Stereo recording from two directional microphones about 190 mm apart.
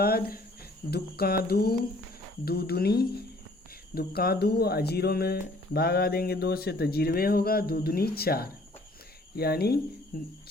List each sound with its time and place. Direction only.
0.0 s speech: 55° left (ahead or behind)